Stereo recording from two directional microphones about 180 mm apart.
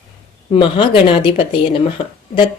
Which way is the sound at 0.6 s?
25° left (ahead or behind).